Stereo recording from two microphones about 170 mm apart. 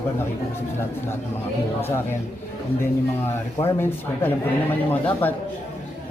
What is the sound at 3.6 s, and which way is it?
Speech, 15° left (ahead or behind).